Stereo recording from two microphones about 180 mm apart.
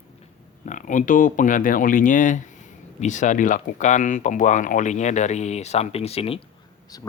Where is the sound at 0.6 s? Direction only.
45° left (ahead or behind).